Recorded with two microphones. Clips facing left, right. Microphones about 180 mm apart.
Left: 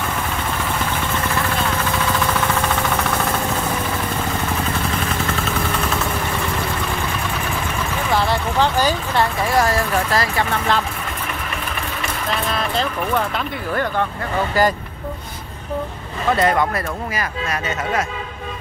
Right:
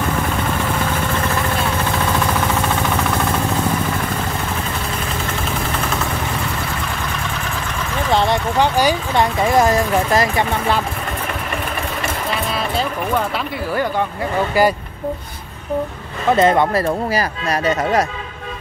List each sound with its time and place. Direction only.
8.1 s speech: 20° right (ahead or behind)
14.6 s speech: 10° right (ahead or behind)
16.3 s speech: 25° right (ahead or behind)